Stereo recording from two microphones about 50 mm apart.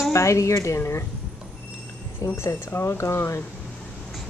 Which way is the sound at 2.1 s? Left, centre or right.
Left.